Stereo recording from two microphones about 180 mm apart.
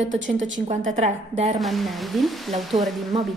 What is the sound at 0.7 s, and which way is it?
Speech, 40° right (ahead or behind).